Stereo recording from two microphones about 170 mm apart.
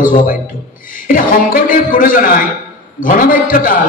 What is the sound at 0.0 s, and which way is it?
A man's voice, 55° left (ahead or behind).